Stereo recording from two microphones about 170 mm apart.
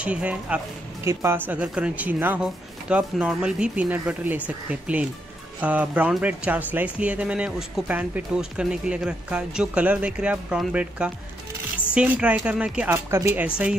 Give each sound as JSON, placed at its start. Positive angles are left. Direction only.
{"t": 0.0, "sound": "speech", "side_deg": -10}